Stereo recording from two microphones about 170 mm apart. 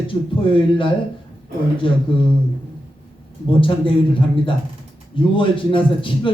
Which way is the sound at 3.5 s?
30° left (ahead or behind).